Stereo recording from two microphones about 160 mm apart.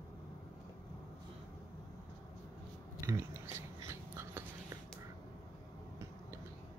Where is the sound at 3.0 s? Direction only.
15° right (ahead or behind).